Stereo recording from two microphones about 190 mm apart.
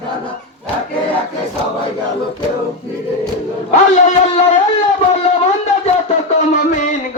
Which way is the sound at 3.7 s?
40° left (ahead or behind).